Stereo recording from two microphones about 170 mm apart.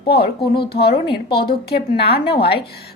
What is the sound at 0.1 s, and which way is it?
A woman's voice, 70° left (ahead or behind).